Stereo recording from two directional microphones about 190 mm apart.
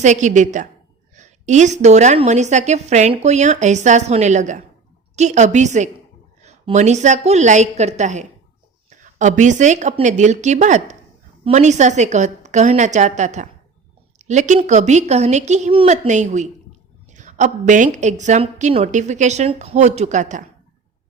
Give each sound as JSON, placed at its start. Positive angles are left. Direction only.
{"t": 0.0, "sound": "a woman's voice", "side_deg": -40}